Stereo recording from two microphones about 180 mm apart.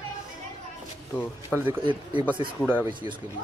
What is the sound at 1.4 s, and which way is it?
Speech, 10° right (ahead or behind).